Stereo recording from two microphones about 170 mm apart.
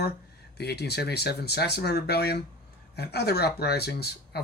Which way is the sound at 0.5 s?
75° left (ahead or behind).